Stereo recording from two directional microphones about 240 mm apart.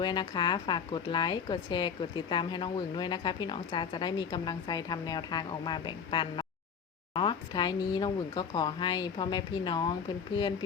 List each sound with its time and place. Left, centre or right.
0.0 s a woman's voice: centre